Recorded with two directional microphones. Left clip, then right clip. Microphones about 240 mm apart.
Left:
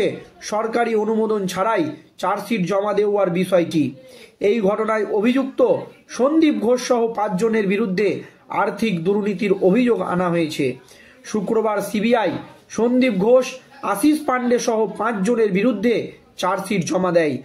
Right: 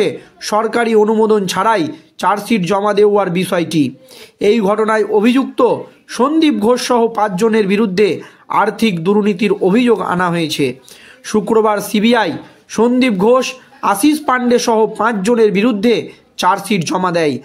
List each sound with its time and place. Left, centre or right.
0.0 s a man's voice: right